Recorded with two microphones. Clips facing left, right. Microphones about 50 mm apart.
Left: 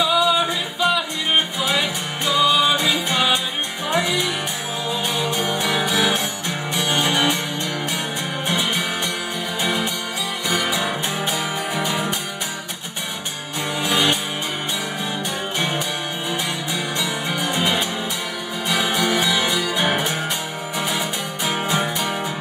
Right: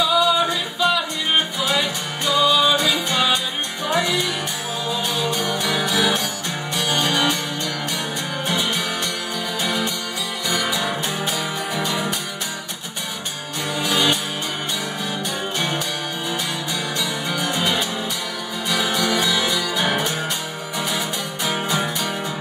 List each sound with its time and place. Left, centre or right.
0.0 s singing: centre
0.7 s music: centre
1.8 s music: left
2.4 s music: centre
4.8 s music: left
8.5 s music: left
13.7 s music: centre
17.0 s music: left
21.5 s music: centre